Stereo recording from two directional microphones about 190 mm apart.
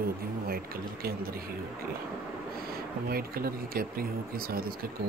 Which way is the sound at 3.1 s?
50° right (ahead or behind).